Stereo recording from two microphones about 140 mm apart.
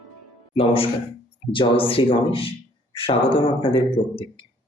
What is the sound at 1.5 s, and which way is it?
Speech, 40° left (ahead or behind).